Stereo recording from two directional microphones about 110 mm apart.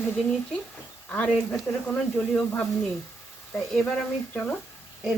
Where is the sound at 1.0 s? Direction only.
15° left (ahead or behind).